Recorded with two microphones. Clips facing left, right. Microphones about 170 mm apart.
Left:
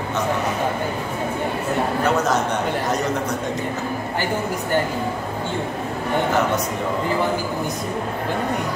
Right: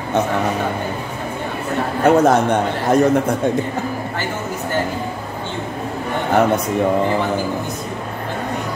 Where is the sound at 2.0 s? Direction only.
55° right (ahead or behind).